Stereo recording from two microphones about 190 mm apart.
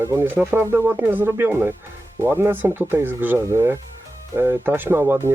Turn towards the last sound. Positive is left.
turn(degrees=-10)  # may be behind; listen again after turning